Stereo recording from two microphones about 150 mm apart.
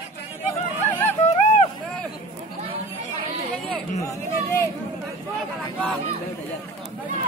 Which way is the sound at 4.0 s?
20° left (ahead or behind).